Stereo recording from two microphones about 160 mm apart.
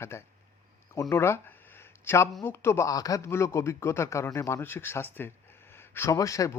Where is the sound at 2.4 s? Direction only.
15° left (ahead or behind).